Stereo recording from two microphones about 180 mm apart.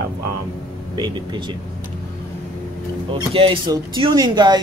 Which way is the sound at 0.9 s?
25° right (ahead or behind).